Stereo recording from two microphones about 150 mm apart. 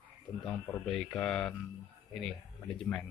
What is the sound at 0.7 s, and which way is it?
Speech, 5° left (ahead or behind).